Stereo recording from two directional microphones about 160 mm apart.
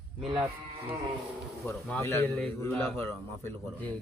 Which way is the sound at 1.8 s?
15° left (ahead or behind).